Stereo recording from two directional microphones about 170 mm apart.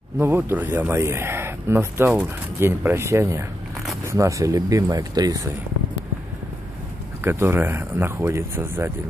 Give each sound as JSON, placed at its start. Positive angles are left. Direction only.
{"t": 0.2, "sound": "speech", "side_deg": -10}
{"t": 7.2, "sound": "speech", "side_deg": -15}